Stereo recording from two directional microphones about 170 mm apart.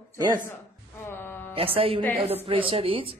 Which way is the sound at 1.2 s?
10° left (ahead or behind).